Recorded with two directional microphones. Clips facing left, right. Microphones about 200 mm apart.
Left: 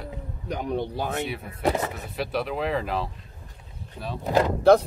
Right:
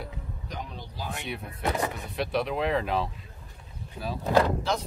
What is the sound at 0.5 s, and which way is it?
Speech, 60° left (ahead or behind).